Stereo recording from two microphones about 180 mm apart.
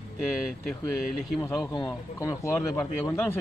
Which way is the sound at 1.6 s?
15° left (ahead or behind).